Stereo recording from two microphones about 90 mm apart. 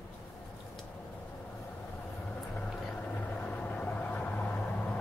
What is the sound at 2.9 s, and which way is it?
Vehicle, 20° left (ahead or behind).